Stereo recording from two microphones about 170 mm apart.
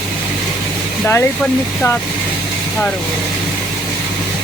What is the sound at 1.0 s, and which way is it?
Speech, 15° left (ahead or behind).